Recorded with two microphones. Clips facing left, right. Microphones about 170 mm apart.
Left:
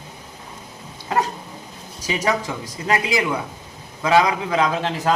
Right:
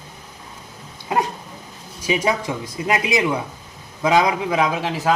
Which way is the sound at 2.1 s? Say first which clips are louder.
Right 2 dB; 15° right (ahead or behind).